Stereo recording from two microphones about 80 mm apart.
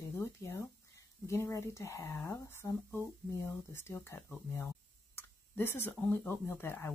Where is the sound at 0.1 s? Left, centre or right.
Left.